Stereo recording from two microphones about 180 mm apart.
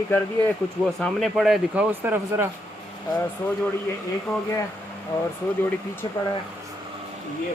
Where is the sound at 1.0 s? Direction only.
Centre (ahead or behind).